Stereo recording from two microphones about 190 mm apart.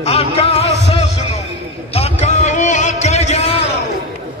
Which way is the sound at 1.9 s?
35° left (ahead or behind).